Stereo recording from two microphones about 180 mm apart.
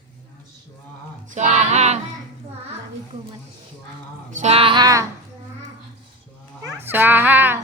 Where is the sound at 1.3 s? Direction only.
40° right (ahead or behind).